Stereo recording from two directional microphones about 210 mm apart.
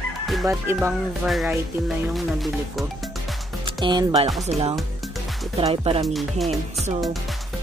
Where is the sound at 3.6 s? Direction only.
20° right (ahead or behind).